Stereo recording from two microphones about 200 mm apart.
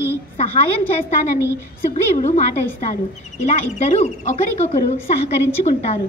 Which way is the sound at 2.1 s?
35° left (ahead or behind).